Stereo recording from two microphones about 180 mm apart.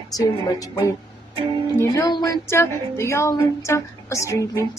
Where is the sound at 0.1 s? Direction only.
20° left (ahead or behind).